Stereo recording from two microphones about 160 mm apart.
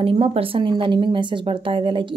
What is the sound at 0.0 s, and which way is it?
Speech, 35° right (ahead or behind).